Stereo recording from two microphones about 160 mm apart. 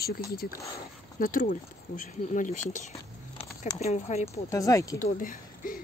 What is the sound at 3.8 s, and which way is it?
Speech, 40° left (ahead or behind).